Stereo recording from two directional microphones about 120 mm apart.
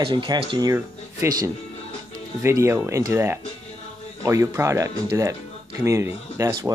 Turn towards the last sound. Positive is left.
turn(degrees=-25)  # may be behind; listen again after turning